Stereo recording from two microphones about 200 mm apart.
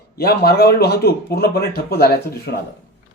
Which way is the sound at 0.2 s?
50° left (ahead or behind).